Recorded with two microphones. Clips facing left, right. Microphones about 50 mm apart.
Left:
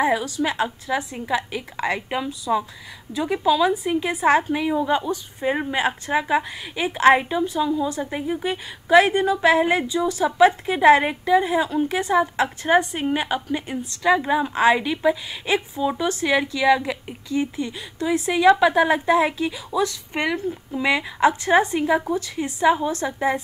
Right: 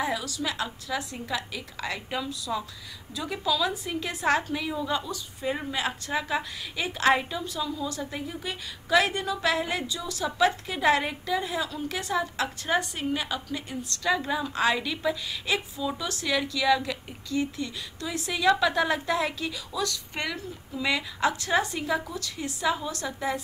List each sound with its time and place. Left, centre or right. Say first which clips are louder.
0.0 s a woman's voice: left 8 dB; left